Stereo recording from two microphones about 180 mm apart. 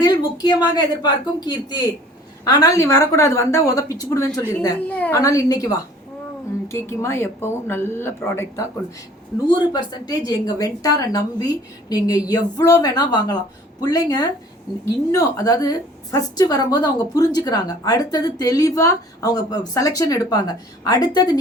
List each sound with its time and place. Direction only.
0.0 s a woman's voice: 25° left (ahead or behind)